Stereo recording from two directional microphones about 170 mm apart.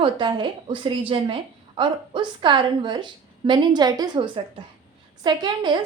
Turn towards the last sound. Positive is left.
turn(degrees=-25)  # may be behind; listen again after turning